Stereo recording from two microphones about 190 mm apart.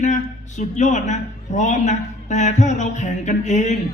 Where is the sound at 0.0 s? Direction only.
40° left (ahead or behind).